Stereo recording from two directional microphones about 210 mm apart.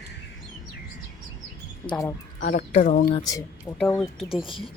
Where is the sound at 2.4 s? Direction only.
35° left (ahead or behind).